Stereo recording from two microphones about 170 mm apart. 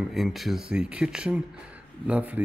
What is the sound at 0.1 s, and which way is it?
Speech, centre (ahead or behind).